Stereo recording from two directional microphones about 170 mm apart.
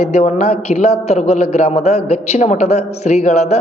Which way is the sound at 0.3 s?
40° left (ahead or behind).